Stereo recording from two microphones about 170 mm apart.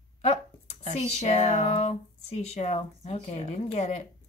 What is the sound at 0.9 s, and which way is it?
Speech, 40° left (ahead or behind).